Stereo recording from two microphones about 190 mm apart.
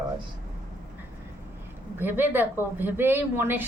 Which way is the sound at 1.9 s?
10° right (ahead or behind).